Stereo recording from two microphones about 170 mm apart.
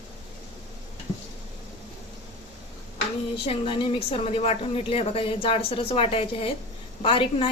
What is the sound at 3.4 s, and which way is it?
A woman's voice, 30° left (ahead or behind).